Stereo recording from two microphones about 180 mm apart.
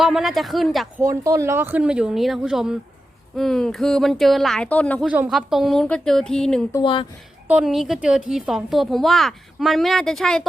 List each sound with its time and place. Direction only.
0.0 s a woman's voice: centre (ahead or behind)
1.0 s a woman's voice: 15° right (ahead or behind); by 5.0 s 10° left (ahead or behind)
5.0 s a woman's voice: 5° right (ahead or behind)
6.7 s speech: 25° left (ahead or behind)
7.4 s a woman's voice: 5° right (ahead or behind)